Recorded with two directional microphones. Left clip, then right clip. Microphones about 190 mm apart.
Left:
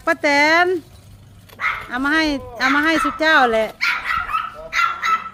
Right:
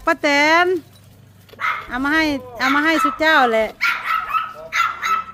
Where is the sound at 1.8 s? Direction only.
10° right (ahead or behind).